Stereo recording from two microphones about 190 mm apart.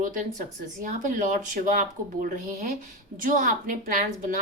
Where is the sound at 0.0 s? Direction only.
40° right (ahead or behind).